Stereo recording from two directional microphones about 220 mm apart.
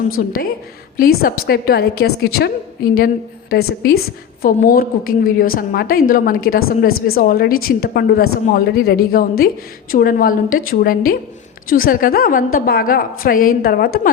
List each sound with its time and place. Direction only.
0.2 s a woman's voice: 35° left (ahead or behind)